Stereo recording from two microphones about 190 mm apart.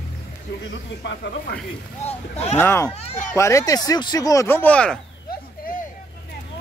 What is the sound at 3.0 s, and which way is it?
Speech, 30° left (ahead or behind).